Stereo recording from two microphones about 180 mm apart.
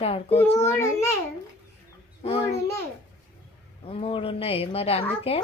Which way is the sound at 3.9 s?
30° left (ahead or behind).